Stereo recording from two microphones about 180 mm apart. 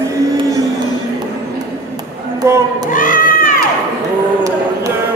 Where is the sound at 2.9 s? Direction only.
50° left (ahead or behind).